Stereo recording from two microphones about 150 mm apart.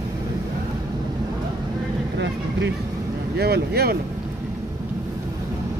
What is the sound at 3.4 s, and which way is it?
Speech, 90° right.